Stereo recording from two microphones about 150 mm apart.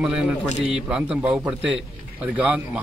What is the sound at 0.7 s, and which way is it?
A man's voice, 5° right (ahead or behind).